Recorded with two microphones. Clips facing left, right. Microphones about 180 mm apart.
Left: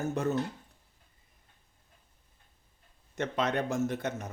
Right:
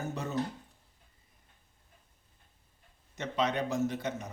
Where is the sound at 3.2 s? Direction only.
50° left (ahead or behind).